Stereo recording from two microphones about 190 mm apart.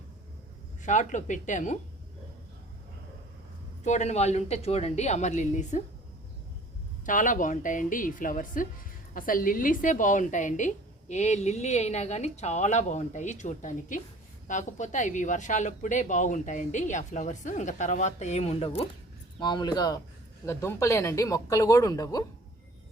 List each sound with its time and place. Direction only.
0.8 s a woman's voice: 40° left (ahead or behind)
3.8 s a woman's voice: 40° left (ahead or behind)
7.0 s a woman's voice: 45° left (ahead or behind); by 22.2 s 20° left (ahead or behind)